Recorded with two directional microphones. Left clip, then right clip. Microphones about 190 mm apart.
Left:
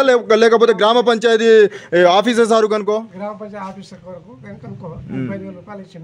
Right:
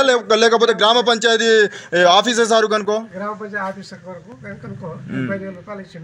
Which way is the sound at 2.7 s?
25° left (ahead or behind).